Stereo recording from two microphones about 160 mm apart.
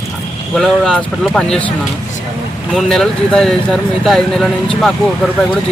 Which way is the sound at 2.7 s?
Centre (ahead or behind).